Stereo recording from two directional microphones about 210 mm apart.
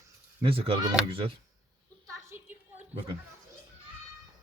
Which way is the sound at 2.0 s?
15° right (ahead or behind).